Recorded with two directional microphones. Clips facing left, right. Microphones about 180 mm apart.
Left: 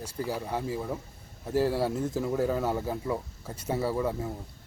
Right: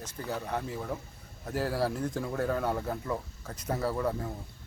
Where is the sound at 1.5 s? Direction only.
25° left (ahead or behind).